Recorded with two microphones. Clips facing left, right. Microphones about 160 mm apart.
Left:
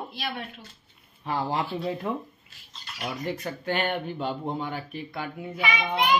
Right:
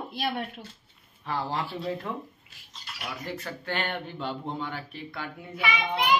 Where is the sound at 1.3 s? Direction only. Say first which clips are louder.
Left 3 dB; 15° left (ahead or behind).